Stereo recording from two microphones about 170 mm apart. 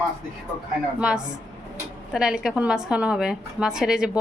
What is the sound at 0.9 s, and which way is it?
A woman's voice, 5° right (ahead or behind).